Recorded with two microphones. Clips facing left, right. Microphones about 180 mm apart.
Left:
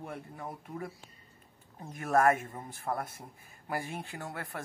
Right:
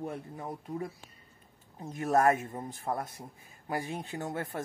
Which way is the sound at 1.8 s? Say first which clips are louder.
Right 1 dB; 20° right (ahead or behind).